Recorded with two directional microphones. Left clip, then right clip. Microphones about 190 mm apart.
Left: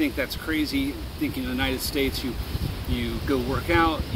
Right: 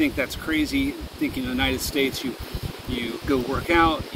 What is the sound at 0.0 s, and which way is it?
Speech, 5° right (ahead or behind).